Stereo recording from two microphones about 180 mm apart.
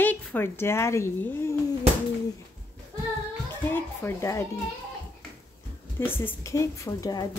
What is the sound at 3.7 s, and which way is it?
Speech, 15° left (ahead or behind).